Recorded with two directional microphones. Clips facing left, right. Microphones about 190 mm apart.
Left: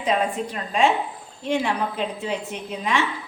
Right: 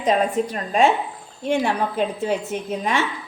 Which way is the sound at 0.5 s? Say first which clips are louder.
Right 1 dB; 45° right (ahead or behind).